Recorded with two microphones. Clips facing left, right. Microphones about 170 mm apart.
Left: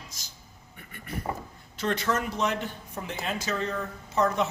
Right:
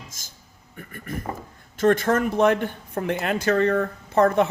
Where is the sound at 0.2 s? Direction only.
50° right (ahead or behind).